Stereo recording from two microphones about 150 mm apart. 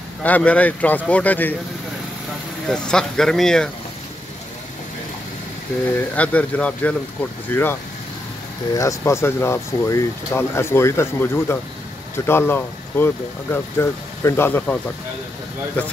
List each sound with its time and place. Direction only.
0.2 s speech: 10° left (ahead or behind)
2.7 s speech: 5° left (ahead or behind)
5.9 s speech: 10° left (ahead or behind)